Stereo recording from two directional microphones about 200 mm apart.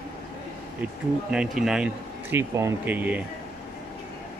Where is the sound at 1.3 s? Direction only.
Centre (ahead or behind).